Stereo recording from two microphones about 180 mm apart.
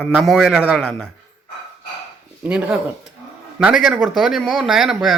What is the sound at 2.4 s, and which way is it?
Speech, 5° right (ahead or behind).